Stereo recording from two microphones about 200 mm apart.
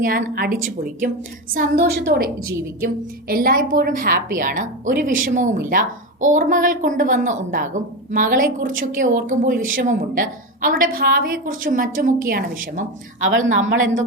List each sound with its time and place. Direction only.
0.0 s a woman's voice: 45° right (ahead or behind)
13.2 s a woman's voice: 75° right (ahead or behind)